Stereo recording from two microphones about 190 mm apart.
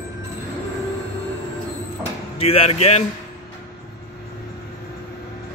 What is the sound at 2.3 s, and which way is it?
Speech, 30° left (ahead or behind).